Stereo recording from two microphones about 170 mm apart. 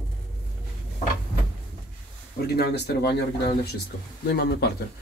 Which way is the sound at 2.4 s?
70° left (ahead or behind).